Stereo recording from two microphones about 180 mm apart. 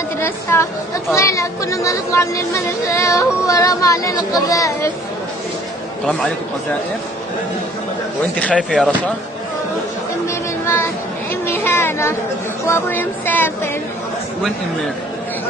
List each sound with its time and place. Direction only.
0.2 s a woman's voice: 15° left (ahead or behind)
6.0 s speech: 5° left (ahead or behind)
8.5 s speech: centre (ahead or behind)
10.2 s a sound: 15° left (ahead or behind)
12.6 s speech: 10° left (ahead or behind)